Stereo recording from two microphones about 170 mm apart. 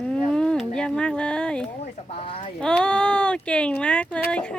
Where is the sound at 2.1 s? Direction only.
35° left (ahead or behind).